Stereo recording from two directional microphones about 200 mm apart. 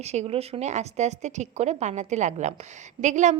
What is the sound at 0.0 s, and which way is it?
Speech, 30° right (ahead or behind).